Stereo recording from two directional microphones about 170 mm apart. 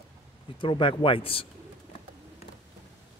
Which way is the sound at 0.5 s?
30° left (ahead or behind).